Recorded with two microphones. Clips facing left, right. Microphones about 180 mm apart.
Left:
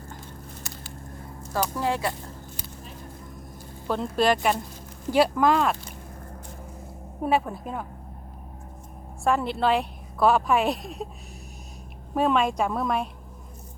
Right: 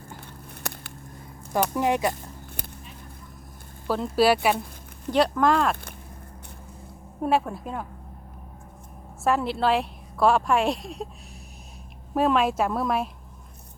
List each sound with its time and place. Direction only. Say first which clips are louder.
0.6 s a sound: right 3 dB; 60° right (ahead or behind)
1.7 s speech: right 4 dB; 20° right (ahead or behind)
3.8 s a woman's voice: right 2 dB; 5° right (ahead or behind)
7.2 s a woman's voice: right 1 dB; centre (ahead or behind)
9.2 s a woman's voice: even; centre (ahead or behind)
12.1 s a woman's voice: right 1 dB; centre (ahead or behind)